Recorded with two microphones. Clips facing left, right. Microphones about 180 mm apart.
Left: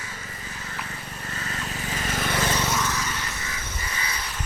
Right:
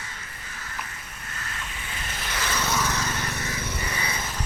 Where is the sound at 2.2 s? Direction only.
50° left (ahead or behind).